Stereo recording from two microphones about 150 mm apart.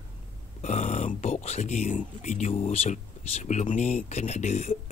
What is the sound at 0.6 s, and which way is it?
Speech, 50° left (ahead or behind).